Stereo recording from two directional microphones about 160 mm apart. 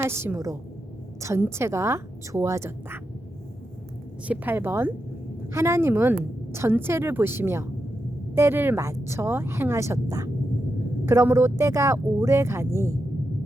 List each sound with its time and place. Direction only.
0.0 s speech: 15° right (ahead or behind)
4.3 s speech: 15° right (ahead or behind)